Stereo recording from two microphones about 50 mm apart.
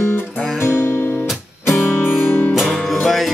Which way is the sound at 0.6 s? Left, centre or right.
Left.